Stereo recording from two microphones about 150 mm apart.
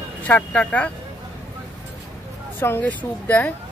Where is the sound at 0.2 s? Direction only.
10° left (ahead or behind).